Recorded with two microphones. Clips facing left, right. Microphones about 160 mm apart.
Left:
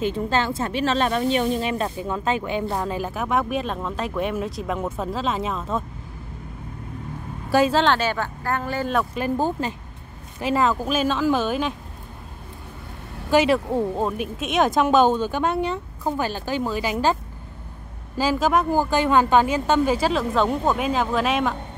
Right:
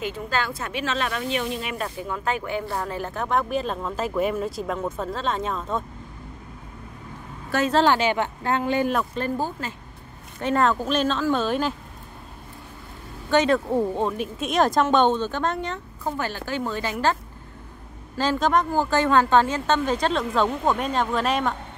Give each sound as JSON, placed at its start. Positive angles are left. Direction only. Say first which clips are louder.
{"t": 0.0, "sound": "speech", "louder": "left 5 dB", "side_deg": 25}
{"t": 7.4, "sound": "speech", "louder": "left 5 dB", "side_deg": 10}
{"t": 7.7, "sound": "speech", "louder": "right 1 dB", "side_deg": -10}
{"t": 9.1, "sound": "speech", "louder": "left 3 dB", "side_deg": 15}
{"t": 10.4, "sound": "speech", "louder": "even", "side_deg": 5}
{"t": 13.3, "sound": "speech", "louder": "left 1 dB", "side_deg": 10}